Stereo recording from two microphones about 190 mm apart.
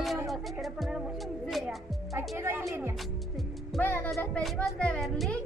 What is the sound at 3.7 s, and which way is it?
Speech, 10° left (ahead or behind).